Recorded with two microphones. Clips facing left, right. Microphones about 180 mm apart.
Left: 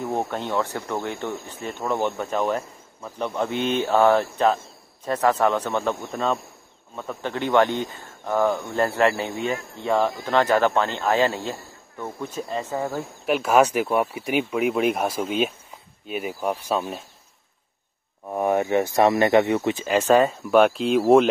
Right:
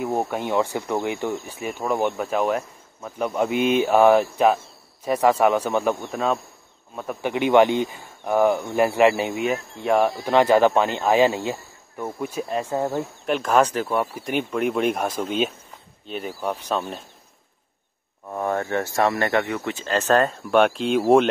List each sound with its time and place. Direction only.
0.0 s speech: 10° right (ahead or behind)
13.2 s speech: 5° left (ahead or behind)
18.3 s speech: 15° left (ahead or behind)